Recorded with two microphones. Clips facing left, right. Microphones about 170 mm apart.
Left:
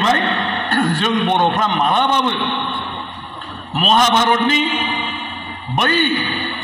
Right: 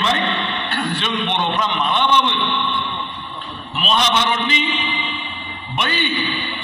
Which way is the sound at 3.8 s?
45° left (ahead or behind).